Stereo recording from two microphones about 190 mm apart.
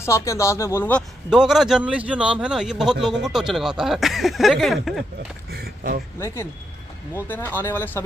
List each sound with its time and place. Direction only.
0.0 s speech: 15° left (ahead or behind)
1.3 s a man's voice: centre (ahead or behind)
5.5 s a sound: 55° right (ahead or behind)
6.1 s speech: 15° left (ahead or behind)